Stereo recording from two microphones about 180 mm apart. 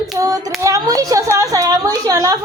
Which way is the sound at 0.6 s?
20° right (ahead or behind).